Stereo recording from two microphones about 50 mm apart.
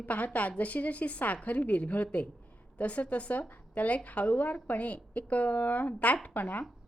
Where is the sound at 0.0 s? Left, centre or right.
Left.